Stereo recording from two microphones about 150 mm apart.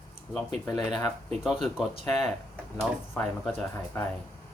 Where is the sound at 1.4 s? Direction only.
5° right (ahead or behind).